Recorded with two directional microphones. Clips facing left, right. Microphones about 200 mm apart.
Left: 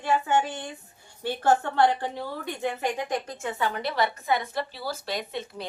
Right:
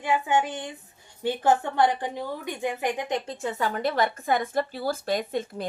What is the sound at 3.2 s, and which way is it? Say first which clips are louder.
Speech: right 1 dB; 35° right (ahead or behind).